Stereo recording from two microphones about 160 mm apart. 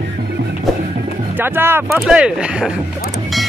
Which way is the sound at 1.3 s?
15° right (ahead or behind).